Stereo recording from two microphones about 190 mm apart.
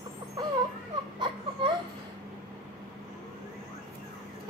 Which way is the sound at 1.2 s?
25° right (ahead or behind).